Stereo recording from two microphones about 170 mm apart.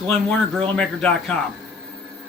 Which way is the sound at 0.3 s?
5° left (ahead or behind).